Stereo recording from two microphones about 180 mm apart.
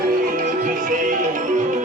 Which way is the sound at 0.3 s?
50° right (ahead or behind).